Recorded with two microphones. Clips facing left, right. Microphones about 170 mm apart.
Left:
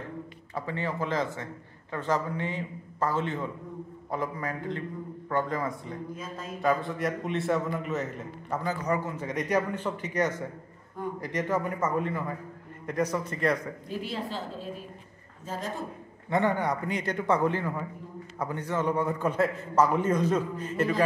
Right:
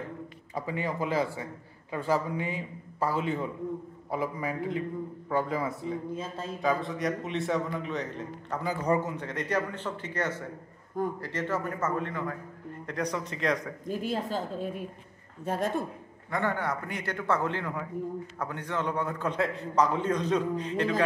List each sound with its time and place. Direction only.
0.6 s a man's voice: 15° right (ahead or behind)
6.1 s speech: 30° right (ahead or behind)
6.6 s a man's voice: centre (ahead or behind)
8.8 s speech: 30° right (ahead or behind)
9.2 s a man's voice: 10° left (ahead or behind)
13.8 s a woman's voice: 45° right (ahead or behind)
15.4 s speech: 60° right (ahead or behind)
16.3 s a man's voice: 20° left (ahead or behind)